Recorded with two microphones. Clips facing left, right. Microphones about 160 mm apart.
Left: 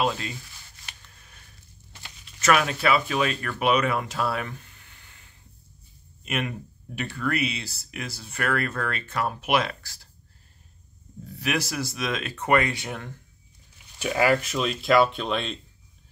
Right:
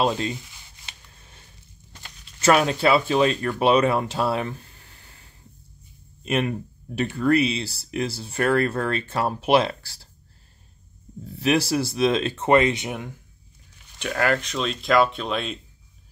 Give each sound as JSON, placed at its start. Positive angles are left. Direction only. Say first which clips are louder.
{"t": 0.0, "sound": "speech", "louder": "right 4 dB", "side_deg": -30}
{"t": 0.4, "sound": "rub", "louder": "right 1 dB", "side_deg": -25}
{"t": 2.4, "sound": "speech", "louder": "right 4 dB", "side_deg": -30}
{"t": 11.2, "sound": "speech", "louder": "right 7 dB", "side_deg": -25}
{"t": 13.9, "sound": "speech", "louder": "left 1 dB", "side_deg": 5}